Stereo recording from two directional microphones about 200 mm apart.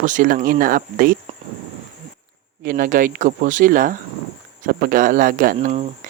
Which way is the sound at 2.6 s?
45° right (ahead or behind).